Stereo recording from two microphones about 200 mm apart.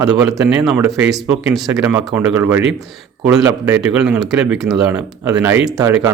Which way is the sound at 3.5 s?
15° right (ahead or behind).